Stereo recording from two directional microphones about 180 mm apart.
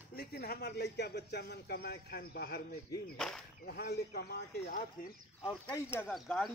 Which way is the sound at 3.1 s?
Centre (ahead or behind).